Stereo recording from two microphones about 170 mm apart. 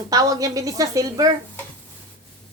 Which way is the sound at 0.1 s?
20° right (ahead or behind).